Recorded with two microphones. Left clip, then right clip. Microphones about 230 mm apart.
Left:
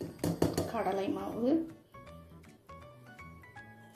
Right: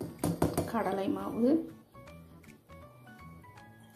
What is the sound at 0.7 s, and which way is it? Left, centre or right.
Speech, right.